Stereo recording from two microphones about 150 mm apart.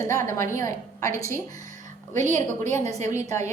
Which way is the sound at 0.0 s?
20° left (ahead or behind).